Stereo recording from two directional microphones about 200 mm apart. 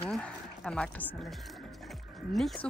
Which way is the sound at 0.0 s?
5° left (ahead or behind).